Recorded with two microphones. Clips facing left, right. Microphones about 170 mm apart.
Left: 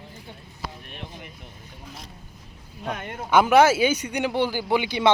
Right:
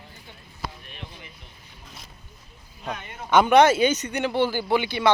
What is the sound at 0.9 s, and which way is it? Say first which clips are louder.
Speech: left 3 dB; 55° left (ahead or behind).